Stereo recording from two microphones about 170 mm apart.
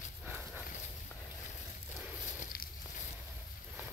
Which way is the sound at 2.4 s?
55° left (ahead or behind).